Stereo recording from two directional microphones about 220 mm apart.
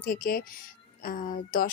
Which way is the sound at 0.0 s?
40° left (ahead or behind).